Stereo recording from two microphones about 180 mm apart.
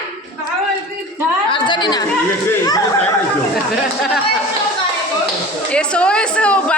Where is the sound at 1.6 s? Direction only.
25° left (ahead or behind).